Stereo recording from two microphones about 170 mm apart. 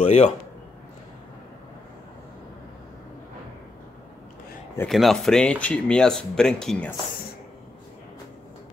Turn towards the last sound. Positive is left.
turn(degrees=5)  # may be behind; listen again after turning